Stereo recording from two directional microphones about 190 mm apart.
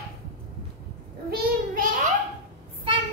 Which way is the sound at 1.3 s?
50° right (ahead or behind).